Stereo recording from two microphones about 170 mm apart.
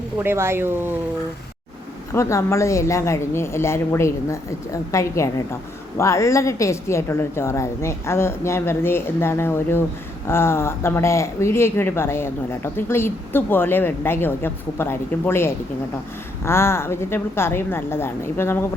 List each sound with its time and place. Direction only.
0.2 s speech: 15° right (ahead or behind)
2.1 s speech: 15° left (ahead or behind)